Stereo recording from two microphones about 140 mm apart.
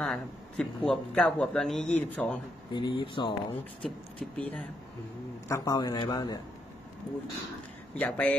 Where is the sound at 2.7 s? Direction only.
35° left (ahead or behind).